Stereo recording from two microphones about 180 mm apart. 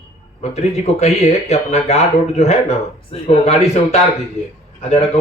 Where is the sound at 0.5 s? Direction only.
35° left (ahead or behind).